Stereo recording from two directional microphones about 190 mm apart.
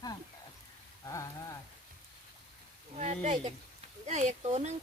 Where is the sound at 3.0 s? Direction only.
35° right (ahead or behind).